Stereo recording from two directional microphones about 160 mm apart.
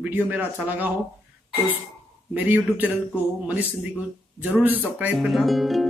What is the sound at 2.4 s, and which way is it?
Speech, 10° right (ahead or behind).